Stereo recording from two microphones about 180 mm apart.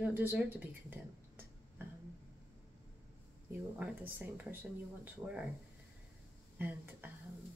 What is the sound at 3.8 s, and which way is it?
A woman's voice, 10° right (ahead or behind).